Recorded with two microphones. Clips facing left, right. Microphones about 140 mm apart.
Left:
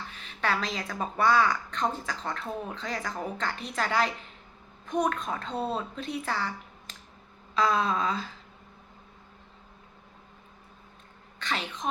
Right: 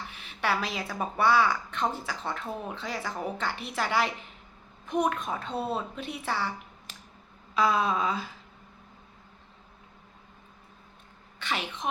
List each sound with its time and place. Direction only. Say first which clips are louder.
0.3 s speech: even; 10° right (ahead or behind)
11.3 s speech: even; 10° right (ahead or behind)